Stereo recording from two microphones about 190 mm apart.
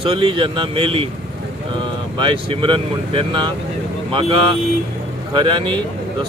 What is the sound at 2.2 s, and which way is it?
Speech, 25° right (ahead or behind).